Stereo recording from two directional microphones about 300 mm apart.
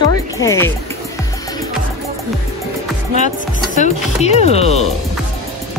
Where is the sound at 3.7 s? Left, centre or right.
Left.